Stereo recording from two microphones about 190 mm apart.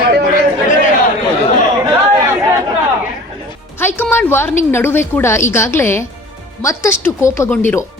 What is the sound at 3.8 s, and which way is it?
Speech, 10° left (ahead or behind).